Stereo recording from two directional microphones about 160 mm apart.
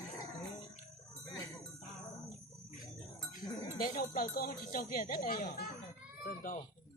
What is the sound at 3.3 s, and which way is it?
Speech, 65° left (ahead or behind).